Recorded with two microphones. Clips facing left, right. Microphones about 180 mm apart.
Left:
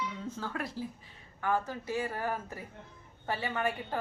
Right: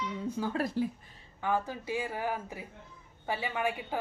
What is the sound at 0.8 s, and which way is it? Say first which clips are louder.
Speech: right 8 dB; 65° right (ahead or behind).